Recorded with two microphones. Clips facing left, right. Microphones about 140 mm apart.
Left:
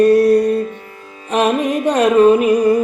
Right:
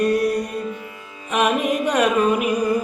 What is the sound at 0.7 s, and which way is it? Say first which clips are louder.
Music: even; 45° left (ahead or behind).